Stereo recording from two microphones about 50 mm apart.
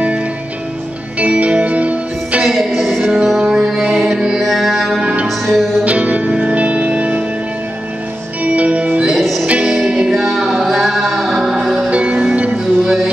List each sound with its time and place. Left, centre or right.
1.2 s music: right
2.4 s music: centre
3.0 s music: centre
3.9 s music: centre
5.9 s music: right
8.5 s music: right
9.0 s music: centre
9.8 s music: right
10.1 s music: centre
11.9 s music: right